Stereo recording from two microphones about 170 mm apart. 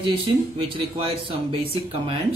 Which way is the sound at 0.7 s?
30° right (ahead or behind).